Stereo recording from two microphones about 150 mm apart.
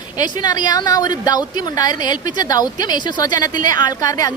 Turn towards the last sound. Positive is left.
turn(degrees=25)  # may be behind; listen again after turning